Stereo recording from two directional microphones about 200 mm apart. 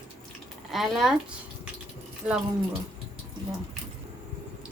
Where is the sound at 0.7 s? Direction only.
Centre (ahead or behind).